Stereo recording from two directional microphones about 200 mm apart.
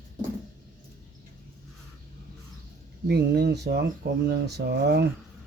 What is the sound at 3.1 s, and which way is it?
Speech, 55° right (ahead or behind).